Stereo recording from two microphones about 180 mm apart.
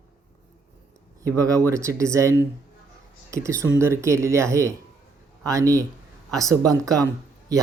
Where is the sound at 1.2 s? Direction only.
20° right (ahead or behind).